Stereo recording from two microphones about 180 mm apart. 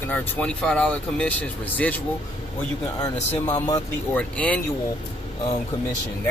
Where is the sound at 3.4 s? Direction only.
20° left (ahead or behind).